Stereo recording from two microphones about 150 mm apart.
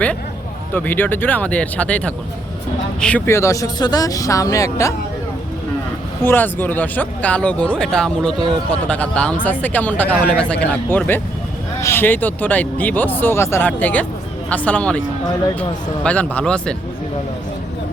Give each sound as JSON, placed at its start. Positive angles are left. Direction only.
{"t": 0.7, "sound": "speech", "side_deg": 10}
{"t": 6.2, "sound": "speech", "side_deg": 15}
{"t": 16.0, "sound": "speech", "side_deg": 10}